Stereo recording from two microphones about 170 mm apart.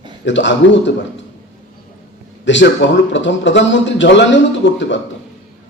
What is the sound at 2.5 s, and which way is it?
A man's voice, 90° left.